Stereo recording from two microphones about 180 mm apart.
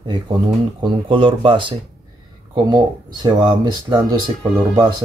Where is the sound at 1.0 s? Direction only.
30° right (ahead or behind).